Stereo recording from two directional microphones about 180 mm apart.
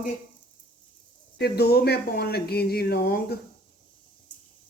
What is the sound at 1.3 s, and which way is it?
Speech, 60° left (ahead or behind).